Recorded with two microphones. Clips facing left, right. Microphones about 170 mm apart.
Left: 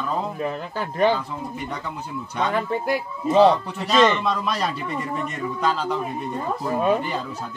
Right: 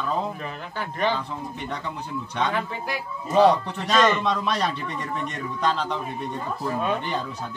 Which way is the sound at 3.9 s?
5° left (ahead or behind).